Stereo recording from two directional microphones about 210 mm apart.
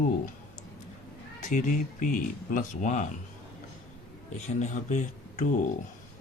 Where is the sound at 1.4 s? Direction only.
35° left (ahead or behind).